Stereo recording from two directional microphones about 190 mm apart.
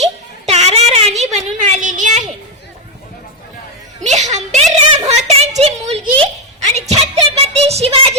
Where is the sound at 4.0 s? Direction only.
40° right (ahead or behind).